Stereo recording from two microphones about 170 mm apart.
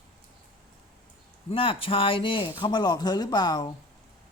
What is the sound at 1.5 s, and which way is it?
Speech, 35° left (ahead or behind).